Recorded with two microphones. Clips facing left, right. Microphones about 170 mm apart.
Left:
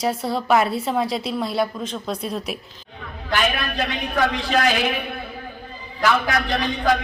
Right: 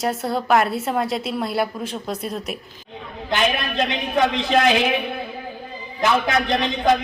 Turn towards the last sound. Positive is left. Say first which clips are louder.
# right 2 dB
turn(degrees=-20)  # may be behind; listen again after turning